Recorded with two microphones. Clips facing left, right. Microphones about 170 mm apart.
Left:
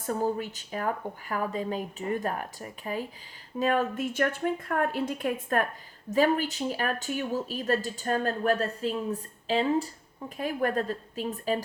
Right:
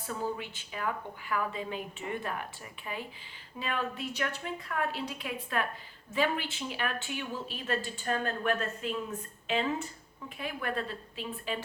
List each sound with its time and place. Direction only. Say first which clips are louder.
0.0 s a woman's voice: left 6 dB; 45° left (ahead or behind)